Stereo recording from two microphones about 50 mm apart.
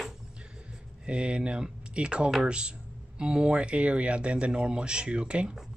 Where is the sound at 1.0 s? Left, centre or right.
Right.